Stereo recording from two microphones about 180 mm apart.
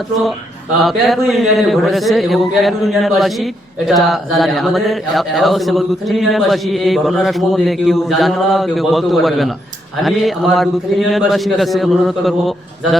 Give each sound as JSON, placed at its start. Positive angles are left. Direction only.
{"t": 0.8, "sound": "speech", "side_deg": 0}